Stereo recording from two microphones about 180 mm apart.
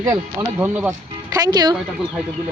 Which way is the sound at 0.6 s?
10° right (ahead or behind).